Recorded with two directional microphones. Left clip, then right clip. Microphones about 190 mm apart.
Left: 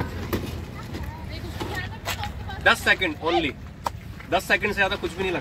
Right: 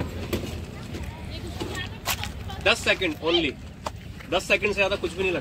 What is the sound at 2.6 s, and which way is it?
Speech, 15° left (ahead or behind).